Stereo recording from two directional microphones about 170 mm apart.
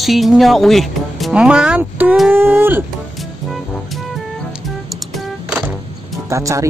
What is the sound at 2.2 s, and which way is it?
Speech, 10° right (ahead or behind).